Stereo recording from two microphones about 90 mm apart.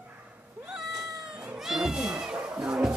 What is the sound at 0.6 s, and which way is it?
Cat, 10° right (ahead or behind).